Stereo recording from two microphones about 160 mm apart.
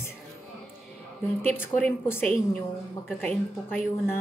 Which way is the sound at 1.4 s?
10° left (ahead or behind).